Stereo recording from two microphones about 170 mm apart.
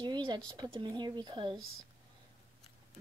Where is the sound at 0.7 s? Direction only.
25° right (ahead or behind).